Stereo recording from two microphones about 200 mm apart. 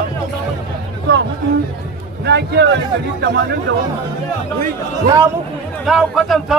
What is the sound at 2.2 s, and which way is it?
A man's voice, 60° right (ahead or behind).